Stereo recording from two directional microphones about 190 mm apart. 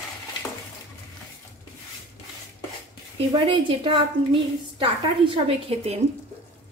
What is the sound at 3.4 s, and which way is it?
A woman's voice, 25° right (ahead or behind).